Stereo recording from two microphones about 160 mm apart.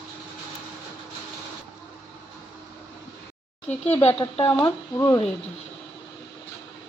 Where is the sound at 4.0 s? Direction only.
15° left (ahead or behind).